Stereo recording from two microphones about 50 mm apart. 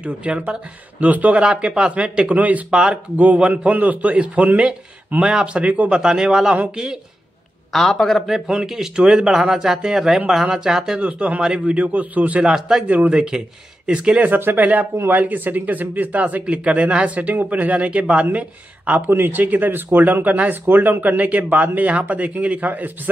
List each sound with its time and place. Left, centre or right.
0.0 s a man's voice: right
1.4 s a man's voice: centre; by 2.6 s right
2.7 s a man's voice: centre
7.7 s a man's voice: centre
8.5 s speech: centre
11.0 s a man's voice: right
12.4 s speech: centre
12.8 s a man's voice: right
13.1 s a man's voice: centre
14.2 s speech: right
19.0 s speech: right
21.2 s speech: right